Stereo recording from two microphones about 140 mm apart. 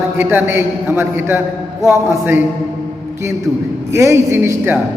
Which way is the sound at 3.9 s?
20° right (ahead or behind).